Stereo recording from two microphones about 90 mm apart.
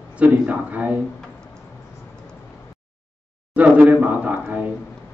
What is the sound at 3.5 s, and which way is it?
Speech, 15° right (ahead or behind).